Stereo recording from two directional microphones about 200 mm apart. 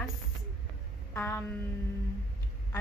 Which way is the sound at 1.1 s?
10° left (ahead or behind).